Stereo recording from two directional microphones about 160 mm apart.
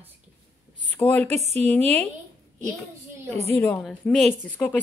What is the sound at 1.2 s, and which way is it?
Speech, 45° right (ahead or behind).